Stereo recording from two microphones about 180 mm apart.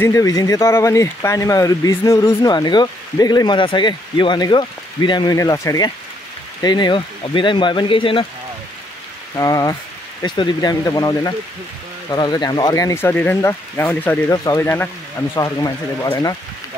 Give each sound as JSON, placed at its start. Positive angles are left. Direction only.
{"t": 0.0, "sound": "speech", "side_deg": 15}
{"t": 9.3, "sound": "speech", "side_deg": 20}